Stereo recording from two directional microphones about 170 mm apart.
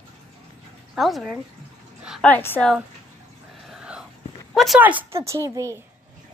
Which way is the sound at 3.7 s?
5° right (ahead or behind).